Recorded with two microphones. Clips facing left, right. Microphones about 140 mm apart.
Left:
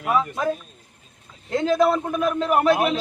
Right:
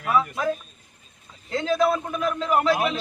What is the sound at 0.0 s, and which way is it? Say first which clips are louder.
Speech: left 1 dB; 20° left (ahead or behind).